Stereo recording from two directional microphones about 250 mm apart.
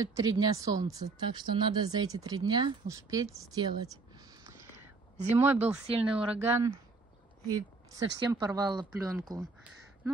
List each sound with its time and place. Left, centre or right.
0.0 s speech: centre
5.6 s speech: right
6.2 s speech: centre